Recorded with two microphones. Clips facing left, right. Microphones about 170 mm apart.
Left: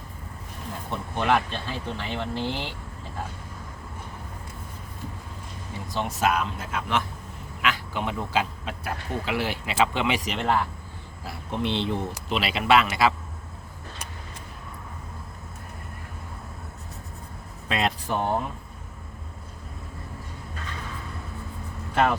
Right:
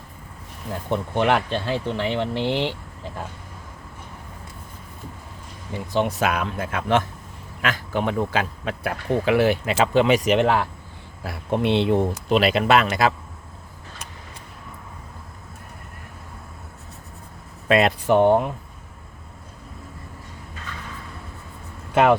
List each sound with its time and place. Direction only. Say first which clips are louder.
0.9 s speech: right 4 dB; 70° right (ahead or behind)
5.9 s speech: right 3 dB; 65° right (ahead or behind); by 10.3 s 45° right (ahead or behind)
10.3 s speech: right 4 dB; 80° right
11.3 s speech: right 7 dB; 60° right (ahead or behind)
12.3 s speech: right 4 dB; 50° right (ahead or behind)
17.7 s speech: right 9 dB; 60° right (ahead or behind)